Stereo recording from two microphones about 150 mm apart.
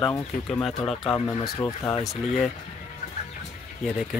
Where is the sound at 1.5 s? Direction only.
15° left (ahead or behind).